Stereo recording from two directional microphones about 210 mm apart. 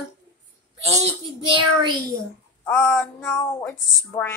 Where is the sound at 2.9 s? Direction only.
10° left (ahead or behind).